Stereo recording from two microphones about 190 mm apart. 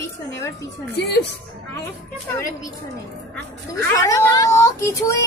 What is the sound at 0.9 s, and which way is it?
Speech, 60° left (ahead or behind).